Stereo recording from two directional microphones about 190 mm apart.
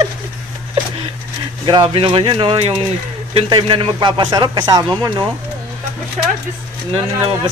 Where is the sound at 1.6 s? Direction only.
25° right (ahead or behind).